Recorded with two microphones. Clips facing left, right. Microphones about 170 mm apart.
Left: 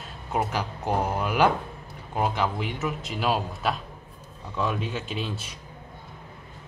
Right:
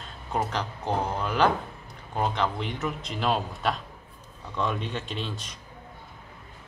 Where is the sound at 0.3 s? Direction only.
10° left (ahead or behind).